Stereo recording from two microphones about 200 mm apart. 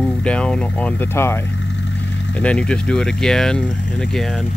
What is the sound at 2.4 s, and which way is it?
Speech, 5° left (ahead or behind).